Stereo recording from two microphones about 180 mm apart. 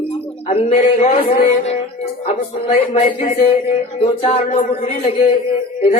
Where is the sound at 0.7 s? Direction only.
40° left (ahead or behind).